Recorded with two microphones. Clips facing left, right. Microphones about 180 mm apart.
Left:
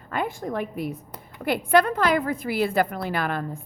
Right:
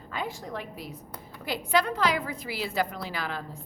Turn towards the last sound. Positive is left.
turn(degrees=55)  # may be behind; listen again after turning